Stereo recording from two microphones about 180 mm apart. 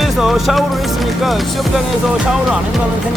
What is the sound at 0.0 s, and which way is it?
Music, centre (ahead or behind).